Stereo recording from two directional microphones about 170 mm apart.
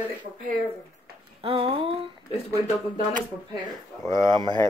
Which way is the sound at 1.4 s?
30° right (ahead or behind).